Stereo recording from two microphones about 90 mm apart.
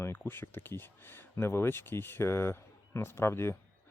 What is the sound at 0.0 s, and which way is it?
Speech, 25° left (ahead or behind).